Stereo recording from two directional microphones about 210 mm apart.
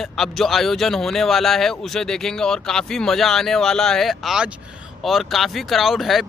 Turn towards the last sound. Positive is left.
turn(degrees=0)  # may be behind; listen again after turning